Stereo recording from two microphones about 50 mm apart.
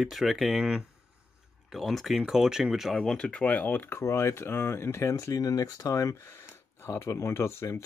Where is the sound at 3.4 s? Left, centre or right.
Left.